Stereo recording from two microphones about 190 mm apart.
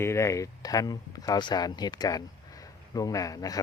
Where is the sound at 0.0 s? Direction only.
15° left (ahead or behind).